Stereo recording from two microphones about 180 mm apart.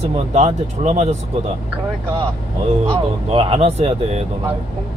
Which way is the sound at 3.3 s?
30° right (ahead or behind).